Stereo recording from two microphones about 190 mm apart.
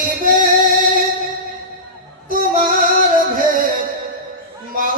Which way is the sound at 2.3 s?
45° right (ahead or behind).